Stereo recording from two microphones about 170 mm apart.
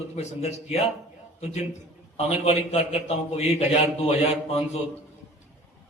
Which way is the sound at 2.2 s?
40° left (ahead or behind).